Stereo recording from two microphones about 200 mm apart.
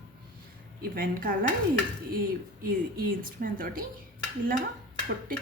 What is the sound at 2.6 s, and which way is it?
A woman's voice, 45° right (ahead or behind).